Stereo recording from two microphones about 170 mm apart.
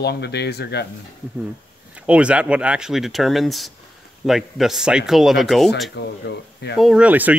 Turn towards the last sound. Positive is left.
turn(degrees=-10)  # may be behind; listen again after turning